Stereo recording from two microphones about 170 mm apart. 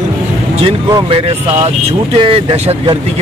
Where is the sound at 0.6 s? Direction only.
30° right (ahead or behind).